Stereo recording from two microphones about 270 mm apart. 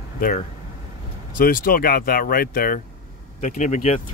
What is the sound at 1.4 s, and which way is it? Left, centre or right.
Speech, left.